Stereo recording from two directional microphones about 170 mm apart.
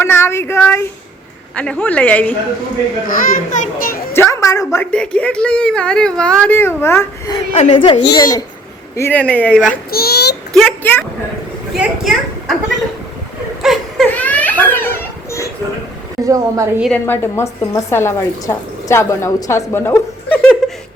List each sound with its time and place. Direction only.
0.0 s speech: 15° left (ahead or behind)
3.1 s a child's voice: 55° left (ahead or behind)
4.1 s speech: 15° left (ahead or behind)
7.7 s a child's voice: 30° left (ahead or behind)
9.0 s speech: 10° left (ahead or behind)
9.6 s a child's voice: 65° left (ahead or behind)
10.5 s speech: 5° left (ahead or behind)
13.6 s a sound: centre (ahead or behind)
14.1 s baby laughter: 10° left (ahead or behind)
16.2 s a woman's voice: 20° right (ahead or behind)
17.1 s speech: 15° left (ahead or behind)
20.6 s a sound: centre (ahead or behind)